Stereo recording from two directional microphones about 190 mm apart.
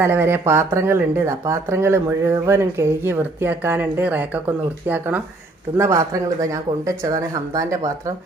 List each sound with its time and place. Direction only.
0.0 s speech: 10° right (ahead or behind)